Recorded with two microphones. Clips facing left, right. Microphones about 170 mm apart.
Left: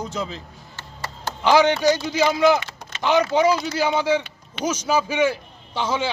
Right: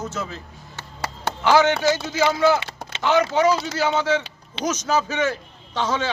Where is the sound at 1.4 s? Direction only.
15° left (ahead or behind).